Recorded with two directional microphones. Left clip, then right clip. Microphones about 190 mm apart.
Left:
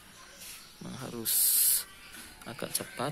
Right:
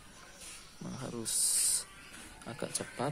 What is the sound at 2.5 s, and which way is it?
Speech, centre (ahead or behind).